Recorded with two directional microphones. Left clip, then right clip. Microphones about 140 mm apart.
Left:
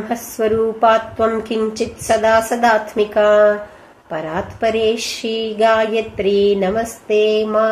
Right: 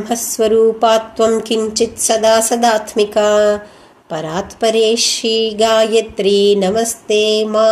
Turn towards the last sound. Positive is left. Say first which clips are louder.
# right 3 dB
turn(degrees=-30)  # may be behind; listen again after turning